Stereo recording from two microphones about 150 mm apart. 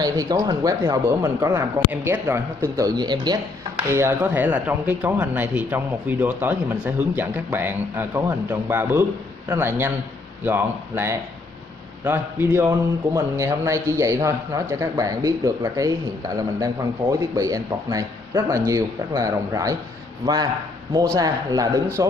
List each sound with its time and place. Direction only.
0.0 s a man's voice: 25° right (ahead or behind)
3.9 s a man's voice: 15° right (ahead or behind)
21.1 s a man's voice: 25° right (ahead or behind)